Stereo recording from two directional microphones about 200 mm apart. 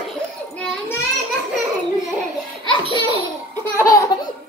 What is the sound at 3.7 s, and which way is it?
Laughter, 15° left (ahead or behind).